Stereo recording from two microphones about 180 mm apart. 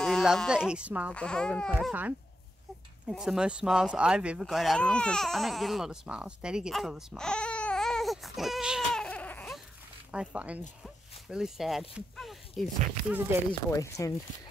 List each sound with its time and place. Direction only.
0.0 s speech: centre (ahead or behind)
1.1 s speech: 5° left (ahead or behind)
10.1 s speech: 5° right (ahead or behind)
12.2 s a sound: centre (ahead or behind)
13.5 s speech: 15° left (ahead or behind)